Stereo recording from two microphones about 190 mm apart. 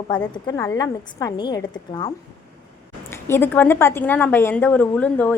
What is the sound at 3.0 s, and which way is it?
A woman's voice, 10° left (ahead or behind).